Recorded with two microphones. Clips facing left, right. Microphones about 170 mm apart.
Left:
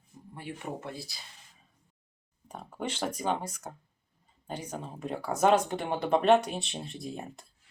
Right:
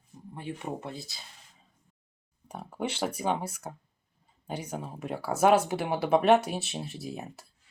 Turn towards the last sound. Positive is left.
turn(degrees=-5)  # may be behind; listen again after turning